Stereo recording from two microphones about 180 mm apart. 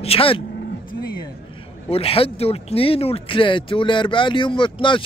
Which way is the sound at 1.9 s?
30° left (ahead or behind).